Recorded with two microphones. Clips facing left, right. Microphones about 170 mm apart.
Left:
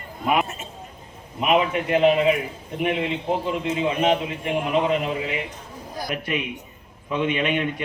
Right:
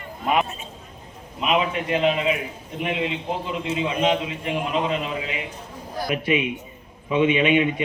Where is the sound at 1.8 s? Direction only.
55° left (ahead or behind).